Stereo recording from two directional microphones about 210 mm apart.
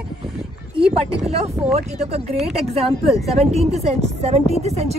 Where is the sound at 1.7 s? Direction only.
30° right (ahead or behind).